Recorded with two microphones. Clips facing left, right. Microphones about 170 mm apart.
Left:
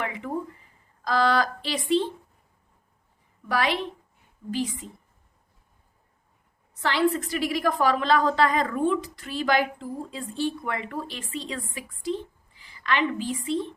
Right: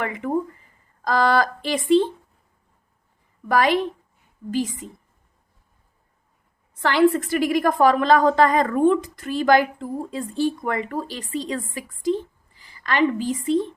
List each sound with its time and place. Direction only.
0.0 s a woman's voice: 50° right (ahead or behind)
3.5 s a woman's voice: 45° right (ahead or behind)
6.8 s a woman's voice: 55° right (ahead or behind)